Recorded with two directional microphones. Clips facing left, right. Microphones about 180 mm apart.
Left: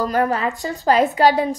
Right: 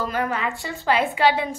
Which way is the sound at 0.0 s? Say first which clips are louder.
Left 5 dB; 40° left (ahead or behind).